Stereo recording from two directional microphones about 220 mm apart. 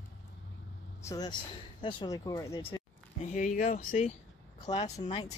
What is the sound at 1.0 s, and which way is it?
Speech, 15° left (ahead or behind).